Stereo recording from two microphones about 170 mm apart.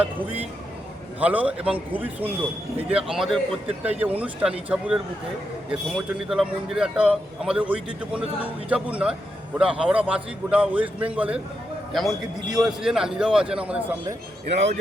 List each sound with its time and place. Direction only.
1.2 s a man's voice: 10° right (ahead or behind)
6.2 s a man's voice: 5° right (ahead or behind)
14.5 s a man's voice: 40° right (ahead or behind)